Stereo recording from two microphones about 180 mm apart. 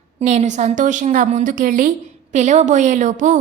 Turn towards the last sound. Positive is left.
turn(degrees=-45)  # may be behind; listen again after turning